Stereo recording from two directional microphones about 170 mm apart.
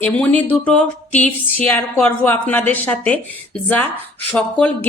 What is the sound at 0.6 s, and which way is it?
A woman's voice, 5° left (ahead or behind).